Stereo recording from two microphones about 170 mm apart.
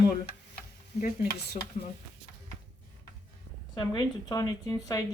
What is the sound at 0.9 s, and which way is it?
Speech, 55° left (ahead or behind).